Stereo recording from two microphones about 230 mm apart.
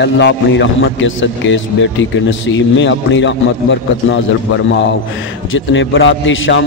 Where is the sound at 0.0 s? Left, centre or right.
Left.